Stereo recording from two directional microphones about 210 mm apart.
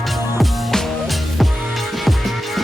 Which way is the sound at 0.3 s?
Centre (ahead or behind).